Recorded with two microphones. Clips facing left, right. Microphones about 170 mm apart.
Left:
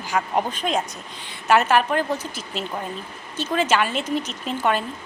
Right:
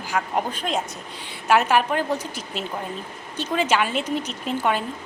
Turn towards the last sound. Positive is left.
turn(degrees=-10)  # may be behind; listen again after turning